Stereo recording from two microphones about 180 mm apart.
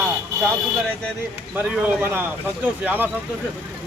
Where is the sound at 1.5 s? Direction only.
10° right (ahead or behind).